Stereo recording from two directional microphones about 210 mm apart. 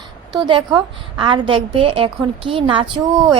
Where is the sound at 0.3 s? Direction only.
20° right (ahead or behind).